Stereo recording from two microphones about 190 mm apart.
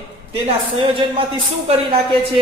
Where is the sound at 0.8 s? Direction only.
25° right (ahead or behind).